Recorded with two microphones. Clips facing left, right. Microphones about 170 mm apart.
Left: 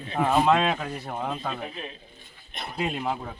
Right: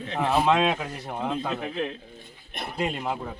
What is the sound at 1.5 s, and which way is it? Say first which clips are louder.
Speech: right 6 dB; 80° right.